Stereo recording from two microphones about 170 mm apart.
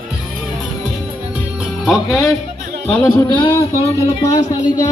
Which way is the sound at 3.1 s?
25° left (ahead or behind).